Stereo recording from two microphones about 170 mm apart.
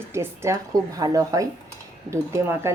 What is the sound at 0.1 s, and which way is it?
Speech, 15° right (ahead or behind).